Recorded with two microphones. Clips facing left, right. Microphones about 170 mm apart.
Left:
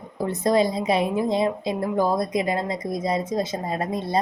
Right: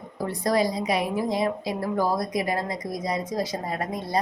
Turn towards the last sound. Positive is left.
turn(degrees=25)  # may be behind; listen again after turning